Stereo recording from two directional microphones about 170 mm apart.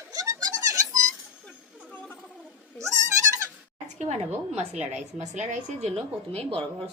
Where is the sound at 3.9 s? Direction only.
40° right (ahead or behind).